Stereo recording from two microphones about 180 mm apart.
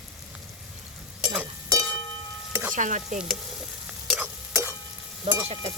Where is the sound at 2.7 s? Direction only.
45° right (ahead or behind).